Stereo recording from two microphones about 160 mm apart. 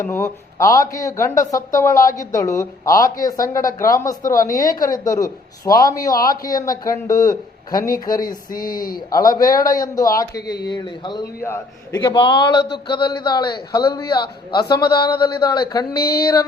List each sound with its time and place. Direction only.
0.0 s a man's voice: 15° left (ahead or behind)
7.8 s speech: 60° left (ahead or behind)
9.0 s a man's voice: 20° left (ahead or behind)
11.4 s a man's voice: 15° left (ahead or behind)
12.0 s a man's voice: 30° left (ahead or behind)
16.0 s a sound: 75° left (ahead or behind)